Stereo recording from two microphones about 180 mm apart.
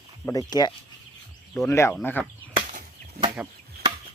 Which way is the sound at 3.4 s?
5° right (ahead or behind).